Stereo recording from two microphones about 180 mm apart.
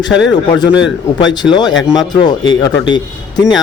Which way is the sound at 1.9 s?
20° left (ahead or behind).